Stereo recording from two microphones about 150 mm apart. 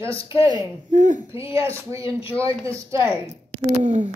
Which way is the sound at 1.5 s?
20° right (ahead or behind).